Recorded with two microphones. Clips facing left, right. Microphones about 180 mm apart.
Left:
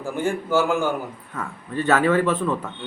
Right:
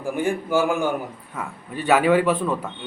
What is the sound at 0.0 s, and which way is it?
A man's voice, 15° right (ahead or behind).